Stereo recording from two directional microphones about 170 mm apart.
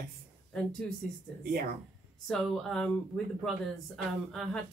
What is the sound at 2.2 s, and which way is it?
Speech, 5° left (ahead or behind).